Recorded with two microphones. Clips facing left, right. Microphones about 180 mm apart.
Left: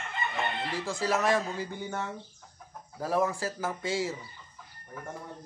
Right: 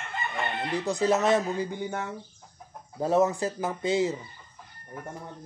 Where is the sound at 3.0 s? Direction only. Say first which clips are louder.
Right 5 dB; 25° right (ahead or behind).